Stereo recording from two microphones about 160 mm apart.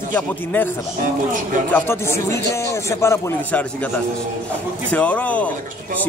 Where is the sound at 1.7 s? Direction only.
15° left (ahead or behind).